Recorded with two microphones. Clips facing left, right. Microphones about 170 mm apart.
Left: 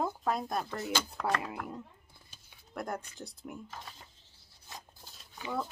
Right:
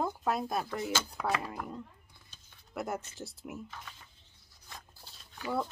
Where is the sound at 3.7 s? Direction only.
35° left (ahead or behind).